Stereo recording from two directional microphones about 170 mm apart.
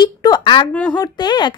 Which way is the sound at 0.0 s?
25° left (ahead or behind).